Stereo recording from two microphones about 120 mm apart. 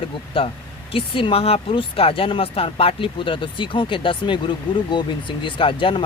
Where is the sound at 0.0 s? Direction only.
50° left (ahead or behind).